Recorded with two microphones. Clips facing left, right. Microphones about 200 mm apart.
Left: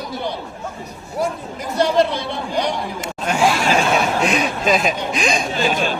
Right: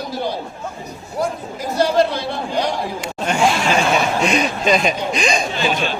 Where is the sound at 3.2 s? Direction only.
Centre (ahead or behind).